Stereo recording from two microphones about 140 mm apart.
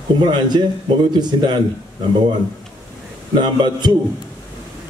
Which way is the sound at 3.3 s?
35° right (ahead or behind).